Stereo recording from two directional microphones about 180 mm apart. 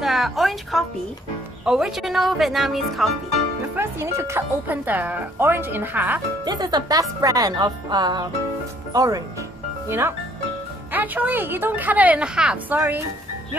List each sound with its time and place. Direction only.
0.0 s a woman's voice: centre (ahead or behind)
3.7 s speech: 15° right (ahead or behind)
6.4 s speech: 20° right (ahead or behind)